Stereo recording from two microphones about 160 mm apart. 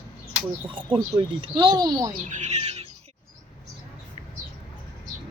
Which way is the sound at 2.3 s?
45° right (ahead or behind).